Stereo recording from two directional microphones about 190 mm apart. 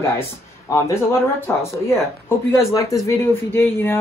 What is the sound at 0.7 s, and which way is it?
Speech, 15° left (ahead or behind).